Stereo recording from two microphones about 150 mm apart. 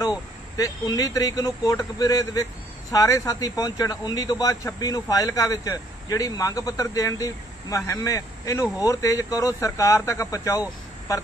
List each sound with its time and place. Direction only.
0.6 s a man's voice: 25° left (ahead or behind)